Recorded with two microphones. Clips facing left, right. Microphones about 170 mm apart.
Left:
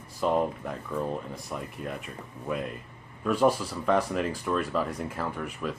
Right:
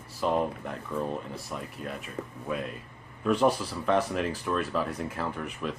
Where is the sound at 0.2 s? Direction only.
15° left (ahead or behind).